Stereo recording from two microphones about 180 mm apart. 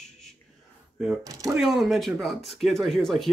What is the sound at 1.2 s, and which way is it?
Speech, 20° right (ahead or behind).